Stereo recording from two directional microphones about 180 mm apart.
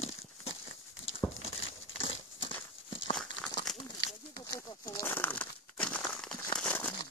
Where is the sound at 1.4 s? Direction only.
35° left (ahead or behind).